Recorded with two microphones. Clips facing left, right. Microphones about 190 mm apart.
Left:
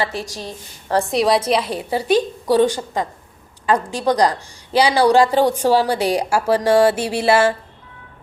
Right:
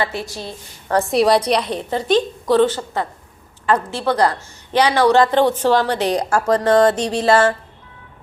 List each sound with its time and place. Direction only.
0.1 s a woman's voice: 40° left (ahead or behind)
1.0 s a woman's voice: centre (ahead or behind)